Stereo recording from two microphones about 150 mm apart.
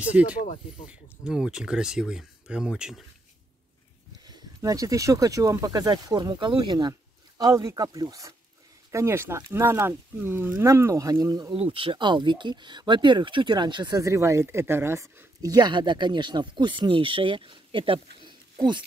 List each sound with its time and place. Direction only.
0.1 s speech: 10° right (ahead or behind)
0.4 s speech: 60° left (ahead or behind)
1.2 s speech: 5° right (ahead or behind)
4.3 s speech: 20° right (ahead or behind)
11.5 s speech: 35° right (ahead or behind)